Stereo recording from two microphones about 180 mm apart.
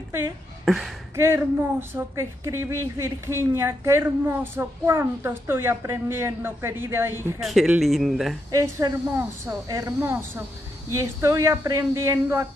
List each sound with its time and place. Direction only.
0.7 s speech: centre (ahead or behind)
1.1 s speech: 15° right (ahead or behind)
7.4 s speech: 5° right (ahead or behind)
8.5 s speech: 20° right (ahead or behind)